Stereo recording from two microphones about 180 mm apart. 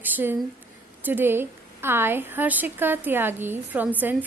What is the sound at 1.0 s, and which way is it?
A woman's voice, 10° right (ahead or behind).